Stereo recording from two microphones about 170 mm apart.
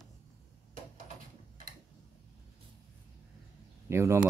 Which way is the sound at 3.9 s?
15° right (ahead or behind).